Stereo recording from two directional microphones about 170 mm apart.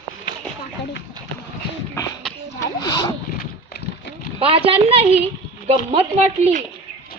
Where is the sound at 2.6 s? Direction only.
25° left (ahead or behind).